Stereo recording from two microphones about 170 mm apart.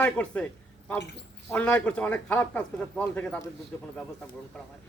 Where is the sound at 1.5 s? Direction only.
10° left (ahead or behind).